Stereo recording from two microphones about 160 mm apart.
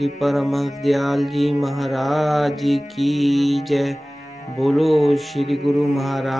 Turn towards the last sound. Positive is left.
turn(degrees=0)  # may be behind; listen again after turning